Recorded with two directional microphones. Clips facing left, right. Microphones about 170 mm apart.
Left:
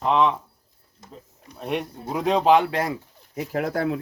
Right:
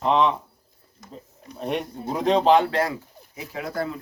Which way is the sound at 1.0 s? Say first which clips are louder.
Right 2 dB; 30° left (ahead or behind).